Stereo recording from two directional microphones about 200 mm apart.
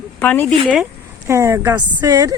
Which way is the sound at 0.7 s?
10° right (ahead or behind).